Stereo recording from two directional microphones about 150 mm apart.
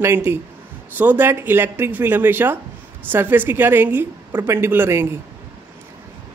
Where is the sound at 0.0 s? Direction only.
15° right (ahead or behind).